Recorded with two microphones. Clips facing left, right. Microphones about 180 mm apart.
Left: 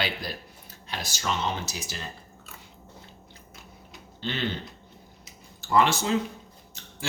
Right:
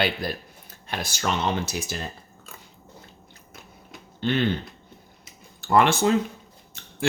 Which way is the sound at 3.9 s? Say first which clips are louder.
Right 8 dB; 55° right (ahead or behind).